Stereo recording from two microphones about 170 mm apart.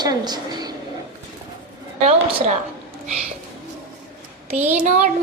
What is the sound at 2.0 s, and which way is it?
Speech, 40° right (ahead or behind).